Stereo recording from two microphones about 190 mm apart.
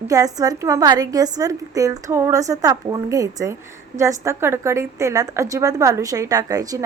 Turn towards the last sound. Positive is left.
turn(degrees=-20)  # may be behind; listen again after turning